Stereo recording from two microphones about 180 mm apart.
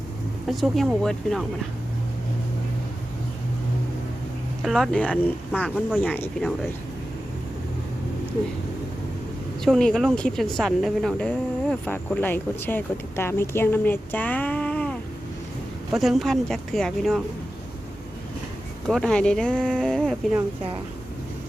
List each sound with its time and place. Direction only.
0.4 s speech: centre (ahead or behind)
4.6 s a woman's voice: centre (ahead or behind)
9.6 s a woman's voice: 5° left (ahead or behind)
18.9 s speech: 5° left (ahead or behind)